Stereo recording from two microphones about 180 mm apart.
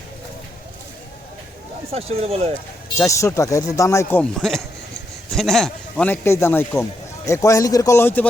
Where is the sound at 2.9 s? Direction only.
15° left (ahead or behind).